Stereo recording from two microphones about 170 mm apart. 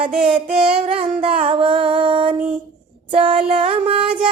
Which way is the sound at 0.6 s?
35° right (ahead or behind).